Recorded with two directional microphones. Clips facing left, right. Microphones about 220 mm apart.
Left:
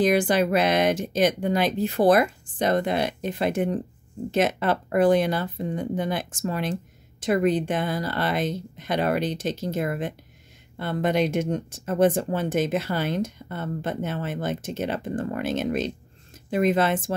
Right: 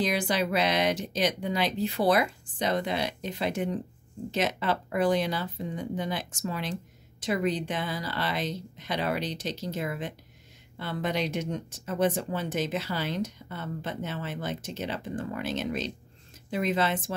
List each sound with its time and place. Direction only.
0.0 s speech: 50° left (ahead or behind)